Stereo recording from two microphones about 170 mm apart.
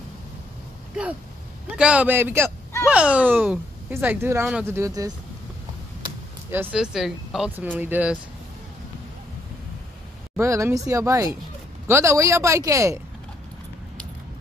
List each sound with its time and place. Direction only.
1.8 s speech: 5° right (ahead or behind)
6.5 s speech: 10° right (ahead or behind)
10.3 s speech: 15° right (ahead or behind)